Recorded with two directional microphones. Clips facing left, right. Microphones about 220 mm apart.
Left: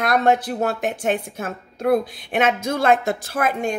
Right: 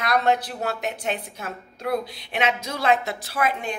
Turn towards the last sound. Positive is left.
turn(degrees=45)  # may be behind; listen again after turning